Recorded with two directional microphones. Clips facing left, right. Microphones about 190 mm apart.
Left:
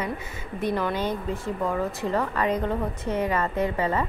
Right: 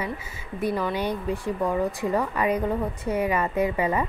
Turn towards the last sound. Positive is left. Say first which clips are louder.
# right 1 dB
turn(degrees=-15)  # may be behind; listen again after turning